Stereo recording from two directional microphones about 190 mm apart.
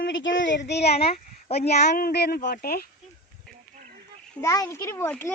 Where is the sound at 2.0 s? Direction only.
55° left (ahead or behind).